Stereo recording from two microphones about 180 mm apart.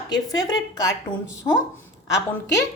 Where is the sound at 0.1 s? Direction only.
20° left (ahead or behind).